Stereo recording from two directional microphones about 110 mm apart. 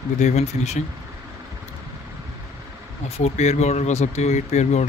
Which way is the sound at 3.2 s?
80° left.